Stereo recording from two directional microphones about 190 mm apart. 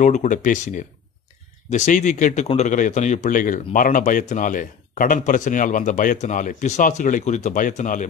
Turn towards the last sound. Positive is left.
turn(degrees=45)  # may be behind; listen again after turning